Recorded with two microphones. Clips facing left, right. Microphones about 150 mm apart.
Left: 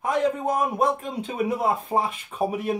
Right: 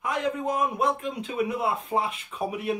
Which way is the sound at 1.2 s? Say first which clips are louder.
Left 3 dB; 40° left (ahead or behind).